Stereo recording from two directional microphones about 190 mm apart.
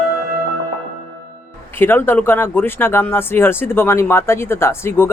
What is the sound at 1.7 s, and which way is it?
Speech, 10° left (ahead or behind).